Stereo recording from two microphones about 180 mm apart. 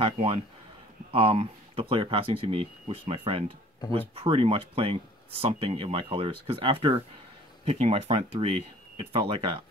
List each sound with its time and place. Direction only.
0.0 s speech: 30° right (ahead or behind)